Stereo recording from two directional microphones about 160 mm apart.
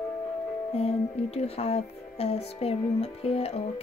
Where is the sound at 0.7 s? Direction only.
40° left (ahead or behind).